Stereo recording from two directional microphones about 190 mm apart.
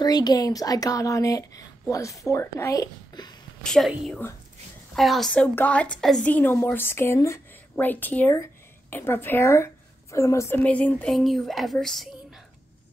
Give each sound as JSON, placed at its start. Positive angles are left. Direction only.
{"t": 0.0, "sound": "a woman's voice", "side_deg": 20}
{"t": 3.6, "sound": "a woman's voice", "side_deg": 5}